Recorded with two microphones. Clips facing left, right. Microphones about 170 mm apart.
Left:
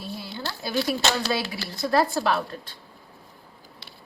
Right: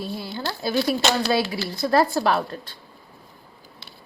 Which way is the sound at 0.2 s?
45° right (ahead or behind).